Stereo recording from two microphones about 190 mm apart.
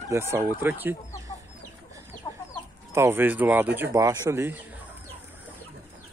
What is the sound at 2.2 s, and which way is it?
Chicken, 20° left (ahead or behind).